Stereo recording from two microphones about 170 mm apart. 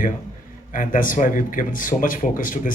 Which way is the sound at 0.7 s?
50° left (ahead or behind).